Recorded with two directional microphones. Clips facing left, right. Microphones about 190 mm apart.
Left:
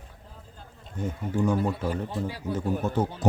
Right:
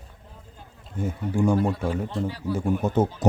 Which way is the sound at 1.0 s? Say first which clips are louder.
Right 3 dB; 10° right (ahead or behind).